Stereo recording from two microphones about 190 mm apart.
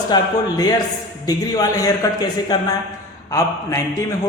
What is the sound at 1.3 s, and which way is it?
A man's voice, 20° left (ahead or behind).